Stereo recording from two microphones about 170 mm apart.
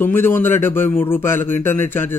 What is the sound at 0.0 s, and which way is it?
A man's voice, 10° left (ahead or behind).